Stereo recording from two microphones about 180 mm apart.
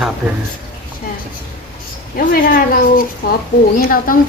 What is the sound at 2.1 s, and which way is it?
A woman's voice, 50° left (ahead or behind).